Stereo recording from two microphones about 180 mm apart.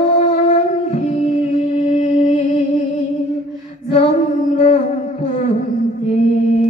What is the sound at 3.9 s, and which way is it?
Mantra, 40° left (ahead or behind).